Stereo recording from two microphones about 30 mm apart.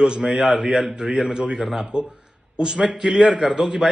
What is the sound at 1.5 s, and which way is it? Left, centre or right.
Speech, centre.